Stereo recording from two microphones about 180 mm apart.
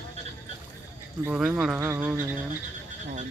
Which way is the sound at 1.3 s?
5° right (ahead or behind).